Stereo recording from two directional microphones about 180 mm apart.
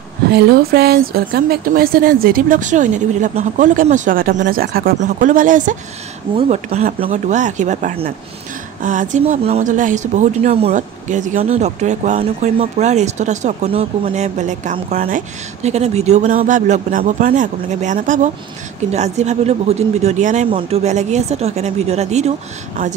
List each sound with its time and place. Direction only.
0.3 s a woman's voice: 60° right (ahead or behind)
6.3 s a woman's voice: 35° right (ahead or behind)
20.4 s speech: 30° right (ahead or behind)